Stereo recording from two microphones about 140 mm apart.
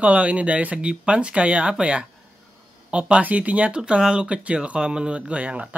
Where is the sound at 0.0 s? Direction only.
10° right (ahead or behind).